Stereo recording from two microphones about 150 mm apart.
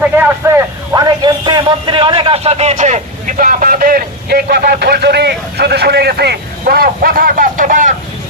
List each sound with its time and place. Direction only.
0.0 s vehicle: 10° right (ahead or behind)
0.9 s a man's voice: 30° right (ahead or behind); by 7.9 s 60° right (ahead or behind)